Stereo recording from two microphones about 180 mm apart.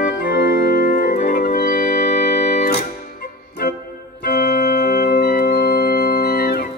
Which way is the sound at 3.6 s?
60° left (ahead or behind).